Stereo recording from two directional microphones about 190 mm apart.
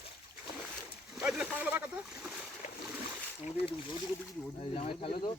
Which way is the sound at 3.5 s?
30° left (ahead or behind).